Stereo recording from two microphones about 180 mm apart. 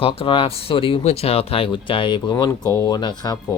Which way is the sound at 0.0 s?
30° left (ahead or behind).